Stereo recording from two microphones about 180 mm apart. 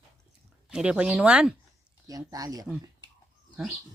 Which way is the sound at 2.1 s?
20° right (ahead or behind).